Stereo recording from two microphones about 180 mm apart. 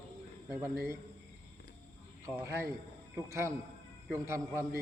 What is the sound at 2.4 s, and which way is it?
A man's voice, 15° right (ahead or behind).